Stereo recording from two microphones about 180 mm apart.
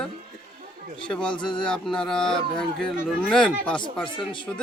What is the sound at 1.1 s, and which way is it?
A man's voice, 5° left (ahead or behind).